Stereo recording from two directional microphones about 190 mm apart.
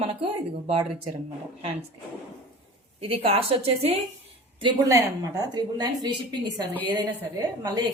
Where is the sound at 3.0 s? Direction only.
30° right (ahead or behind).